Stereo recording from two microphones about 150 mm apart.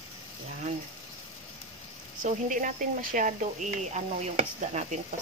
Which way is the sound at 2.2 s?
60° right (ahead or behind).